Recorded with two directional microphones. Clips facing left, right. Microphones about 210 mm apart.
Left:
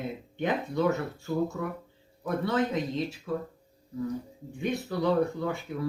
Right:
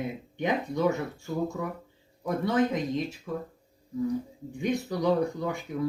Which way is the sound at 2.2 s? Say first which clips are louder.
Right 2 dB; 15° right (ahead or behind).